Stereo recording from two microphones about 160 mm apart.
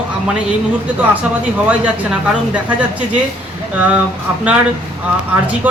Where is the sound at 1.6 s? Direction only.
10° right (ahead or behind).